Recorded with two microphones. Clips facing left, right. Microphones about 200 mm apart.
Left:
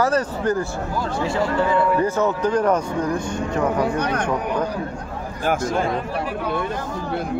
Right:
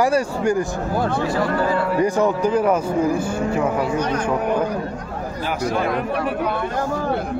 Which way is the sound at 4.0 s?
60° left (ahead or behind).